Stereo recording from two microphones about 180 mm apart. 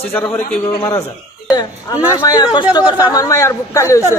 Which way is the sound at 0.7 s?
20° left (ahead or behind).